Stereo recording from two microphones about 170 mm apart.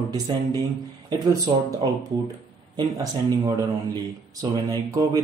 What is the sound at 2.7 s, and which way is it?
Speech, 25° right (ahead or behind).